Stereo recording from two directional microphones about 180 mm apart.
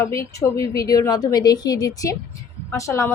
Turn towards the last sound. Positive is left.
turn(degrees=15)  # may be behind; listen again after turning